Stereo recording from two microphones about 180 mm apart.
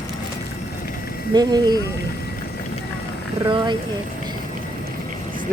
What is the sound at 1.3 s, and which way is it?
Speech, 20° right (ahead or behind).